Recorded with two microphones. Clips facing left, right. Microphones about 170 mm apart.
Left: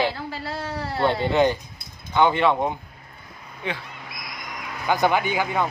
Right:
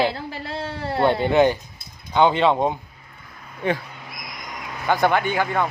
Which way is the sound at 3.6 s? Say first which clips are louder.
Right 7 dB; 50° right (ahead or behind).